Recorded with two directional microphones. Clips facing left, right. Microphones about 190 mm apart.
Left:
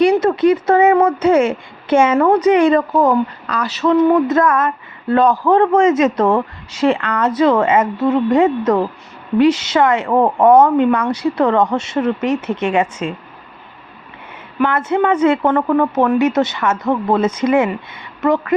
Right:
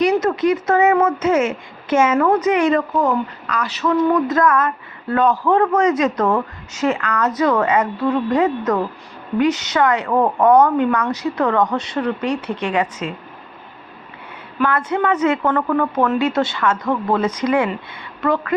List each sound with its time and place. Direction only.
0.0 s speech: 30° left (ahead or behind)
5.3 s speech: 40° left (ahead or behind)
5.7 s speech: 25° left (ahead or behind)
14.6 s speech: 25° left (ahead or behind)